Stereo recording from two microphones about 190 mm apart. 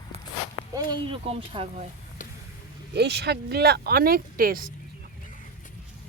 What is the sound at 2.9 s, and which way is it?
Speech, 60° right (ahead or behind).